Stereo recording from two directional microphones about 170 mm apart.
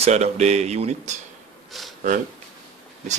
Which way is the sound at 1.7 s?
Centre (ahead or behind).